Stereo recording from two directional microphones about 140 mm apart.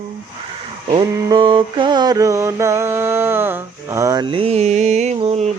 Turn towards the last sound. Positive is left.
turn(degrees=-50)  # may be behind; listen again after turning